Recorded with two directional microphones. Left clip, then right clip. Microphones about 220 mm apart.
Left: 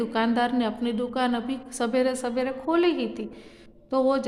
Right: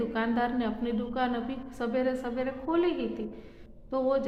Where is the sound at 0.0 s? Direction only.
45° left (ahead or behind).